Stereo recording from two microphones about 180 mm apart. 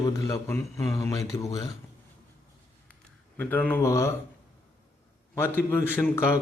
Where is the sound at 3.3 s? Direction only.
10° left (ahead or behind).